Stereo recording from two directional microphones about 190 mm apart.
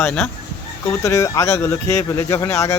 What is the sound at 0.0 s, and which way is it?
Speech, 10° left (ahead or behind).